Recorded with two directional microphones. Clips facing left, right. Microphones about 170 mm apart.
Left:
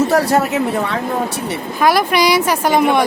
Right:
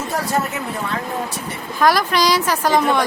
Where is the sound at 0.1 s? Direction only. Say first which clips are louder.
Left 7 dB; 70° left (ahead or behind).